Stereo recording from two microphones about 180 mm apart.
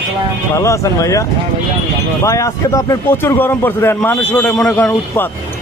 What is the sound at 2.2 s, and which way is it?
A man's voice, 15° left (ahead or behind).